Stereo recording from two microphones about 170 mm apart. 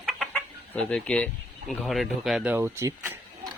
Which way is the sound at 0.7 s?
5° left (ahead or behind).